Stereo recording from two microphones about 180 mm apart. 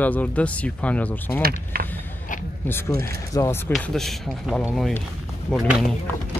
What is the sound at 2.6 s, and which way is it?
Speech, 10° left (ahead or behind).